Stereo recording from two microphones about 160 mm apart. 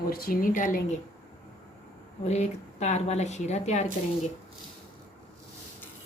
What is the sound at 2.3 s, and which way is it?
A woman's voice, 45° left (ahead or behind).